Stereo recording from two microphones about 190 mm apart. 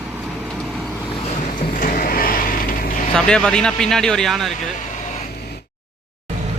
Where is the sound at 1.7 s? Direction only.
45° left (ahead or behind).